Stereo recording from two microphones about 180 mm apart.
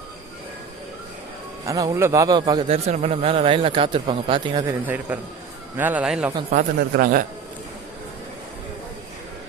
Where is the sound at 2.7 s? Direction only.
35° right (ahead or behind).